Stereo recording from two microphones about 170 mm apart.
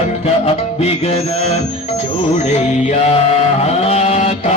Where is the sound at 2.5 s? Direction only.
45° left (ahead or behind).